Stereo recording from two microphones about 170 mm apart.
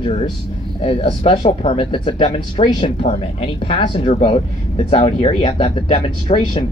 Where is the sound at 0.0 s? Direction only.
30° left (ahead or behind).